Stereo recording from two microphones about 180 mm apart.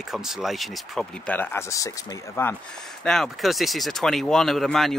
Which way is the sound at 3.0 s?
Centre (ahead or behind).